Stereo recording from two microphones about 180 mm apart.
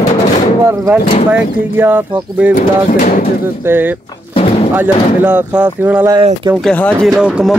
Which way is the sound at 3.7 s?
10° right (ahead or behind).